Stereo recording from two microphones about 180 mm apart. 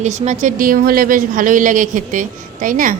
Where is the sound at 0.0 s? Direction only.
40° right (ahead or behind).